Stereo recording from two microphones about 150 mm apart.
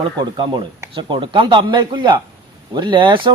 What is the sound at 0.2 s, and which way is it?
A man's voice, 30° right (ahead or behind).